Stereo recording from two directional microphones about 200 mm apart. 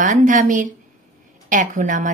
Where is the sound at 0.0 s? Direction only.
40° right (ahead or behind).